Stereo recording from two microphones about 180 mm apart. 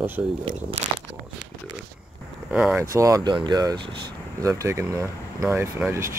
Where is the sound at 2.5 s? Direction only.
5° right (ahead or behind).